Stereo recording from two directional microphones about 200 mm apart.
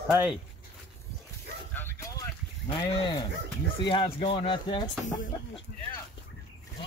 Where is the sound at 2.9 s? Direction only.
20° left (ahead or behind).